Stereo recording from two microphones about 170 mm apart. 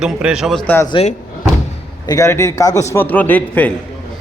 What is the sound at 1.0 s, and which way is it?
Speech, 30° left (ahead or behind).